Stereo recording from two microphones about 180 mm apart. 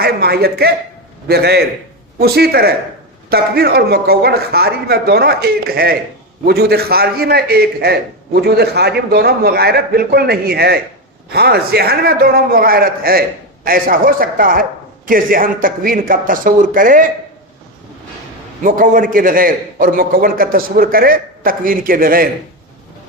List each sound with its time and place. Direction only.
0.0 s a man's voice: 60° right (ahead or behind)
18.6 s a man's voice: 50° right (ahead or behind)